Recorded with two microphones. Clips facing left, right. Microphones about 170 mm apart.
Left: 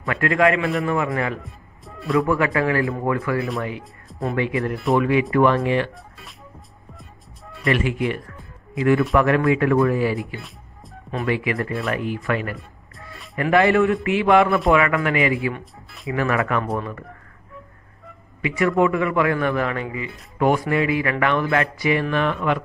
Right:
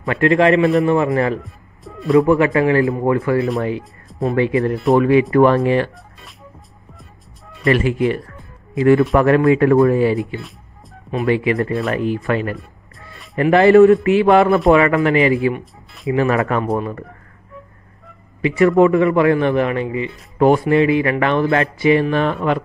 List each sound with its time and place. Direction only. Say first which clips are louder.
0.0 s a man's voice: right 5 dB; 25° right (ahead or behind)
1.4 s music: right 4 dB; centre (ahead or behind)
2.2 s a man's voice: right 6 dB; 25° right (ahead or behind)
7.7 s a man's voice: right 5 dB; 35° right (ahead or behind)
11.2 s a man's voice: right 6 dB; 30° right (ahead or behind)
13.1 s music: left 1 dB; centre (ahead or behind)
13.4 s a man's voice: right 8 dB; 35° right (ahead or behind)
18.6 s a man's voice: right 7 dB; 35° right (ahead or behind)